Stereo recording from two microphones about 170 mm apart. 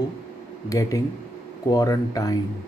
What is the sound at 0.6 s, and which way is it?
Speech, 20° left (ahead or behind).